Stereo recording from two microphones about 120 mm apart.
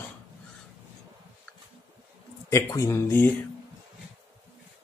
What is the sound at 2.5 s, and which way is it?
Speech, 25° left (ahead or behind).